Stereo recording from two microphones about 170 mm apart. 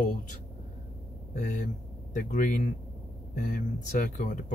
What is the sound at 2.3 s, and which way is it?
Speech, 55° left (ahead or behind).